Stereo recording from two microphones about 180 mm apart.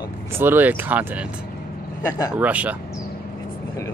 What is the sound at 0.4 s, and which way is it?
Speech, 10° right (ahead or behind).